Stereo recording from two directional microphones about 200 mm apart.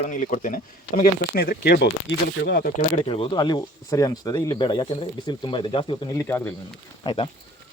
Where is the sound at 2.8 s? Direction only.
30° left (ahead or behind); by 6.5 s 10° left (ahead or behind).